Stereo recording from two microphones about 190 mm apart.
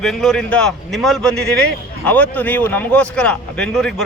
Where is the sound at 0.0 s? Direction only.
Centre (ahead or behind).